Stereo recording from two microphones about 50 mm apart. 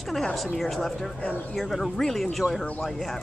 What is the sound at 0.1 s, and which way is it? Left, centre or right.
Speech, centre.